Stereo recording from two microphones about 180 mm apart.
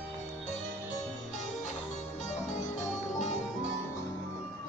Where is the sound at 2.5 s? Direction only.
40° left (ahead or behind).